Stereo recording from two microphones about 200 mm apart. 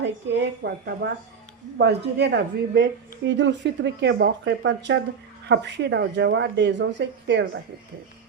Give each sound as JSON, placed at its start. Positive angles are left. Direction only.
{"t": 0.0, "sound": "speech", "side_deg": -60}